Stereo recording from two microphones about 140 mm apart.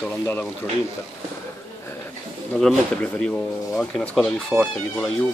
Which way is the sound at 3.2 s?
5° left (ahead or behind).